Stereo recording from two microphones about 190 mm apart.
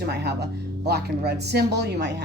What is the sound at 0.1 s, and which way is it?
A woman's voice, 60° right (ahead or behind).